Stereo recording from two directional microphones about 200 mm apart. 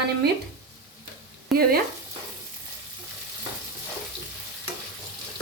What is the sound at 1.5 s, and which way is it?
Frying, centre (ahead or behind).